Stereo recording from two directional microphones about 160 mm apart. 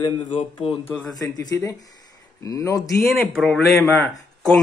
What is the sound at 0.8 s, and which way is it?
Speech, 20° left (ahead or behind).